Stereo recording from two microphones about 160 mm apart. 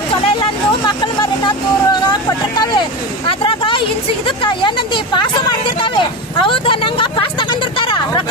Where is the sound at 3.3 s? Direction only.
30° left (ahead or behind).